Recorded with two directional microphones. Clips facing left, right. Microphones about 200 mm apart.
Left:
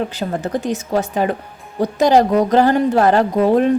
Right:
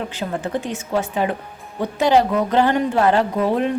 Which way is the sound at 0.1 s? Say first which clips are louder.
Left 3 dB; 40° left (ahead or behind).